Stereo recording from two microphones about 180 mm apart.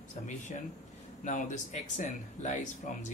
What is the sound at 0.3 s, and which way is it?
Speech, 45° left (ahead or behind).